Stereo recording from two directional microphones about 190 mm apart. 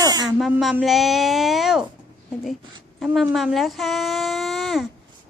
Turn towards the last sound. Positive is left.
turn(degrees=0)  # may be behind; listen again after turning